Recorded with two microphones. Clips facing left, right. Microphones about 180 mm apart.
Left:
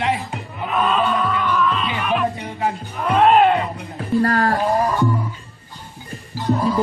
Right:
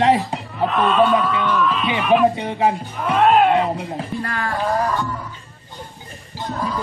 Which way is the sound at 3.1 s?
Centre (ahead or behind).